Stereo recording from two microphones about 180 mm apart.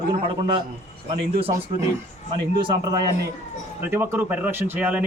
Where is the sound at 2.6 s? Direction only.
20° right (ahead or behind).